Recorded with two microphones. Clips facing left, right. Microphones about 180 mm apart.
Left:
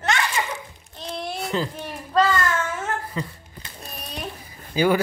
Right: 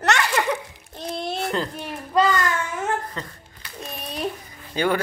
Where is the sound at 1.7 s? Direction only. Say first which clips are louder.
Even; 15° right (ahead or behind).